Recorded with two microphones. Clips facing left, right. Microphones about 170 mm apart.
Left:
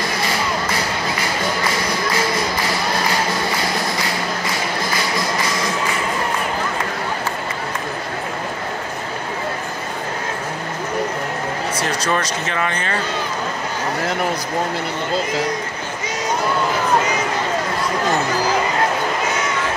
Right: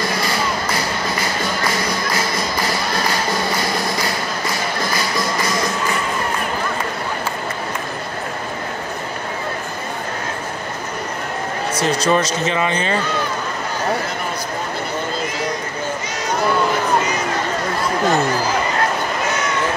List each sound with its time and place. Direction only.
11.8 s speech: 25° right (ahead or behind)